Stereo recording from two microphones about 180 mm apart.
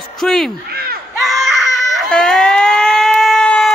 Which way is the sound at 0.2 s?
Centre (ahead or behind).